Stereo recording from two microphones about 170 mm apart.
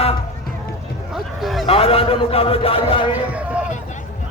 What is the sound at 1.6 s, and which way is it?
Speech, 35° left (ahead or behind).